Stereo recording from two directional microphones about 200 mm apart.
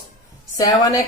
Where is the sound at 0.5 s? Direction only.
20° left (ahead or behind).